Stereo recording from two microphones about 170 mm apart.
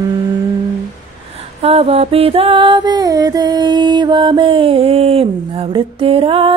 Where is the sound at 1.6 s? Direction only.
35° right (ahead or behind).